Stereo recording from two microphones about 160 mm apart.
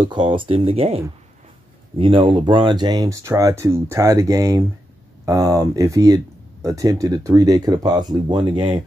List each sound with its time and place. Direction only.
0.1 s speech: 30° right (ahead or behind)